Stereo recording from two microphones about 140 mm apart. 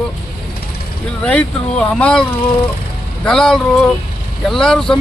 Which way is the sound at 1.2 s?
10° left (ahead or behind).